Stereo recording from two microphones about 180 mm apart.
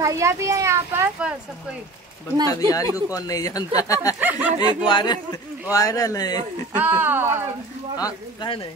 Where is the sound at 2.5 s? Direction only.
20° left (ahead or behind).